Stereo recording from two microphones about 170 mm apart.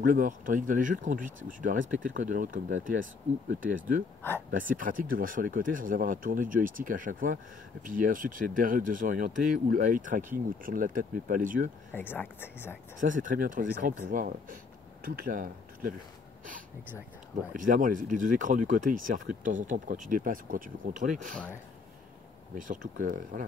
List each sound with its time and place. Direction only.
0.0 s speech: 50° right (ahead or behind)
11.9 s speech: 10° left (ahead or behind)
13.0 s speech: 50° right (ahead or behind)
17.6 s speech: 50° right (ahead or behind)
22.6 s speech: 50° right (ahead or behind)